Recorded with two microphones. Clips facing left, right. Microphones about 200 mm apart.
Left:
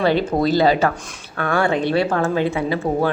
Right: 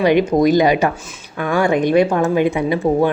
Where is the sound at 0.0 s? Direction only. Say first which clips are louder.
Right 4 dB; 15° right (ahead or behind).